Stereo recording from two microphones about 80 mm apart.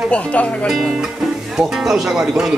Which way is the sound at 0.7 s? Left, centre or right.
Centre.